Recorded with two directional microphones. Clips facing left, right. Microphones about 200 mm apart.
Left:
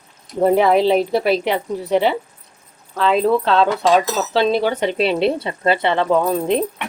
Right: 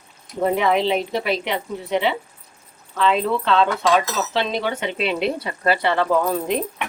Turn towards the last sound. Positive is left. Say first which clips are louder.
# left 3 dB
turn(degrees=25)  # may be behind; listen again after turning